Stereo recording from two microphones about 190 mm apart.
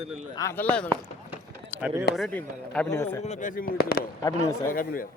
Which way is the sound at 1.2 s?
5° right (ahead or behind).